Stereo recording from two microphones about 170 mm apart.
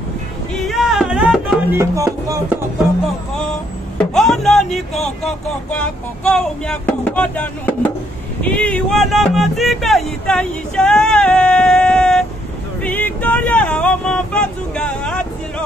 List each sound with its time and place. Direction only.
0.7 s music: centre (ahead or behind)
1.7 s music: 15° right (ahead or behind)
4.0 s music: centre (ahead or behind)
5.0 s speech: 5° left (ahead or behind)
6.3 s music: 5° left (ahead or behind)
8.4 s speech: 10° left (ahead or behind)
12.8 s vehicle: 10° left (ahead or behind)